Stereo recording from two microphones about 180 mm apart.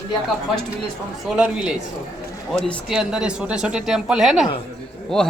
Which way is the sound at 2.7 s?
Centre (ahead or behind).